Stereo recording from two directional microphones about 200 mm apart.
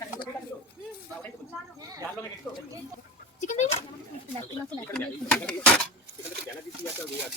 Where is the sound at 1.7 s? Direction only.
15° right (ahead or behind).